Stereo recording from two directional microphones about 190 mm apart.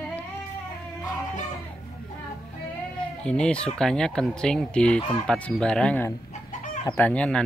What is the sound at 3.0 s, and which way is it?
Speech, 5° left (ahead or behind).